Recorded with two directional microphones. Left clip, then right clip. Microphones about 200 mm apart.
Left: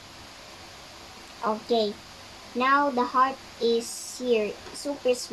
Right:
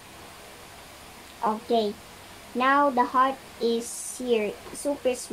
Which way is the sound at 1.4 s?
30° right (ahead or behind).